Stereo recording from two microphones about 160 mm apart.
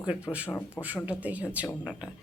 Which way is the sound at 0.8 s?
10° right (ahead or behind).